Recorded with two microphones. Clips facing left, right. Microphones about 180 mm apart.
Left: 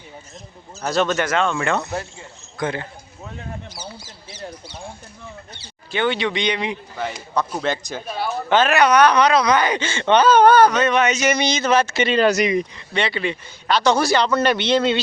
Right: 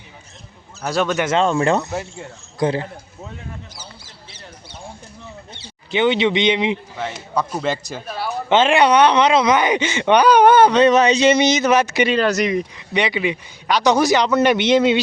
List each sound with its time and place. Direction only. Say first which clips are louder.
0.9 s speech: even; 10° right (ahead or behind)
1.3 s speech: right 4 dB; 30° right (ahead or behind)
5.5 s speech: right 4 dB; 20° right (ahead or behind)
6.9 s speech: right 1 dB; centre (ahead or behind)
8.4 s speech: right 2 dB; 25° right (ahead or behind)
12.1 s speech: left 4 dB; centre (ahead or behind)
12.7 s speech: right 3 dB; 15° right (ahead or behind)